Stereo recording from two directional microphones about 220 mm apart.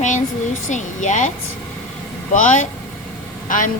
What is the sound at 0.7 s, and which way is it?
Speech, 35° left (ahead or behind).